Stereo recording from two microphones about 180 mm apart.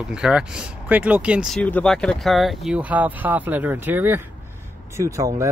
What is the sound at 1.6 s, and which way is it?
Speech, 5° left (ahead or behind).